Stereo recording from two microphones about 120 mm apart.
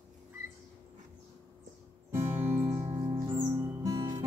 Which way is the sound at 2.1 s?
20° right (ahead or behind).